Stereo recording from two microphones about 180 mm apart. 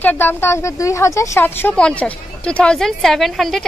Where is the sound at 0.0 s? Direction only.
10° left (ahead or behind).